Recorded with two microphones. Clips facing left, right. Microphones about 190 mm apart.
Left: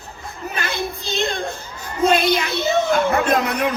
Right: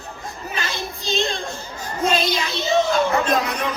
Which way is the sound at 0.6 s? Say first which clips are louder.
Left 4 dB; 55° left (ahead or behind).